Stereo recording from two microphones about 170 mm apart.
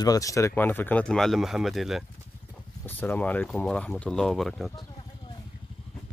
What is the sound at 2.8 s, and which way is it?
Speech, 10° left (ahead or behind).